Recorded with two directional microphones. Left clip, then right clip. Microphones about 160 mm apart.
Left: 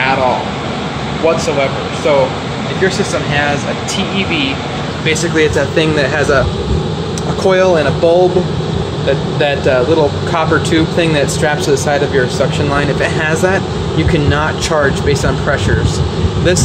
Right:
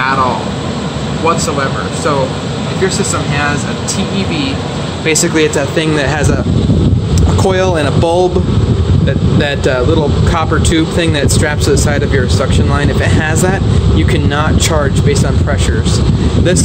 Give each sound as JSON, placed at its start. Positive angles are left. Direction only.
{"t": 5.3, "sound": "speech", "side_deg": -15}
{"t": 7.4, "sound": "speech", "side_deg": -20}